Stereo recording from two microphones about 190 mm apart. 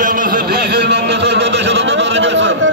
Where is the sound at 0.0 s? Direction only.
45° right (ahead or behind).